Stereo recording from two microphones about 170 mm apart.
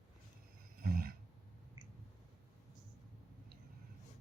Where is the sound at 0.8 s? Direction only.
60° right (ahead or behind).